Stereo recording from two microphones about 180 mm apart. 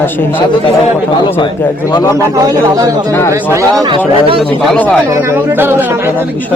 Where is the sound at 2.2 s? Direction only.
20° right (ahead or behind).